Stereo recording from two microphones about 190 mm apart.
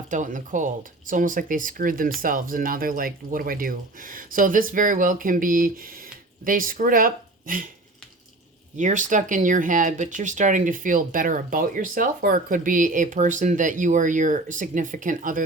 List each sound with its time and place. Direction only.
0.1 s speech: 40° right (ahead or behind)
8.8 s speech: 40° right (ahead or behind)